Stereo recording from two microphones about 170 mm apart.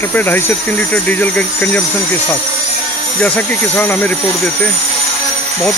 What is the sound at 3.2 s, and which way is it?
Speech, 5° left (ahead or behind).